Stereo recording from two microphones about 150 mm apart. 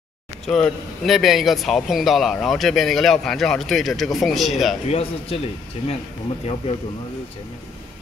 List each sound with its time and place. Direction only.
0.5 s speech: 5° left (ahead or behind)
4.8 s speech: 40° left (ahead or behind)